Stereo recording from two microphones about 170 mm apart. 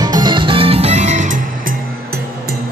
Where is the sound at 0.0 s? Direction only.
25° right (ahead or behind); by 1.2 s 45° right (ahead or behind).